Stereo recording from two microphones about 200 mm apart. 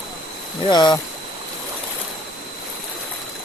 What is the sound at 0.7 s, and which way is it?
Speech, 20° left (ahead or behind).